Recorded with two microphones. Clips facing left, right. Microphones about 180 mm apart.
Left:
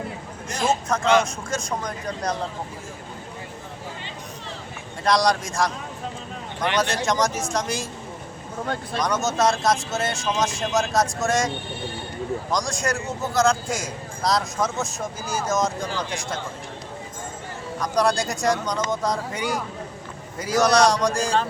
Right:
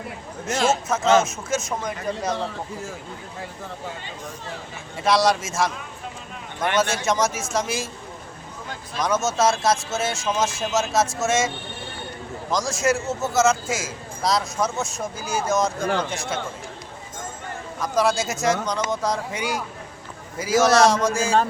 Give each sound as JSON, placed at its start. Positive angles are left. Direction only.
{"t": 0.5, "sound": "speech", "side_deg": -80}
{"t": 1.2, "sound": "speech", "side_deg": -5}
{"t": 5.0, "sound": "speech", "side_deg": -5}
{"t": 6.7, "sound": "speech", "side_deg": 0}
{"t": 9.0, "sound": "speech", "side_deg": 0}
{"t": 17.7, "sound": "speech", "side_deg": 0}